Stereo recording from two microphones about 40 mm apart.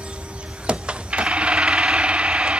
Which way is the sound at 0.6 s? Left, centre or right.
Right.